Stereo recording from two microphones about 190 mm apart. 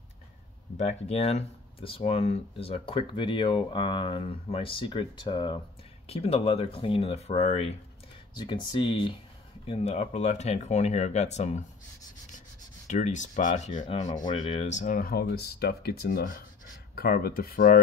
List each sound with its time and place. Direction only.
0.7 s speech: 35° left (ahead or behind)
9.7 s speech: 35° left (ahead or behind)
12.8 s speech: 40° left (ahead or behind)
13.8 s speech: 25° left (ahead or behind)
14.7 s speech: 40° left (ahead or behind)